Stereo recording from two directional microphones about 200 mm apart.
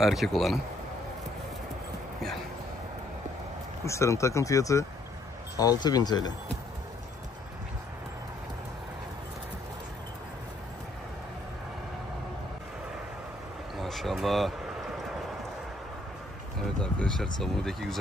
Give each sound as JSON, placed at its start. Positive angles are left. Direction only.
{"t": 0.0, "sound": "speech", "side_deg": 0}
{"t": 3.8, "sound": "speech", "side_deg": 15}
{"t": 13.7, "sound": "vehicle", "side_deg": 0}
{"t": 16.8, "sound": "speech", "side_deg": 5}